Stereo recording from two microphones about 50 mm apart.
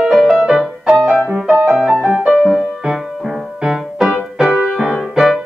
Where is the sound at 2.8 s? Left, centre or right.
Centre.